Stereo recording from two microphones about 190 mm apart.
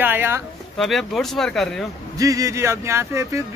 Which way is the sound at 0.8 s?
Centre (ahead or behind).